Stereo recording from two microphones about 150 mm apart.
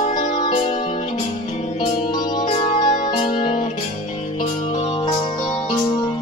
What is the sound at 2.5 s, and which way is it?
Music, 40° left (ahead or behind).